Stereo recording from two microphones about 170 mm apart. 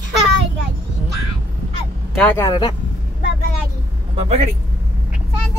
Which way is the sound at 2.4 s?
25° left (ahead or behind).